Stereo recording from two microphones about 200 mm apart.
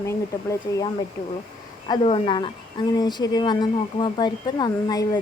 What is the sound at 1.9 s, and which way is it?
Speech, 30° left (ahead or behind).